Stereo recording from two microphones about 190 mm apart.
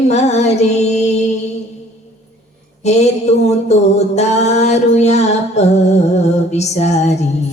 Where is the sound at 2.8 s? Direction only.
35° left (ahead or behind).